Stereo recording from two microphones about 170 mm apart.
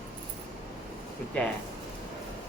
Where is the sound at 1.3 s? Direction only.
5° left (ahead or behind).